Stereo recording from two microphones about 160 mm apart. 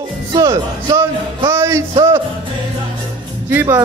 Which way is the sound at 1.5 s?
15° right (ahead or behind).